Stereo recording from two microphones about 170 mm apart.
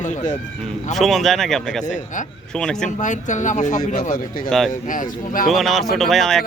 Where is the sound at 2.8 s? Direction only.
45° left (ahead or behind).